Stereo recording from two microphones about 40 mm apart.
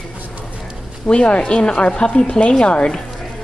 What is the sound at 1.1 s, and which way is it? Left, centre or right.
Speech, left.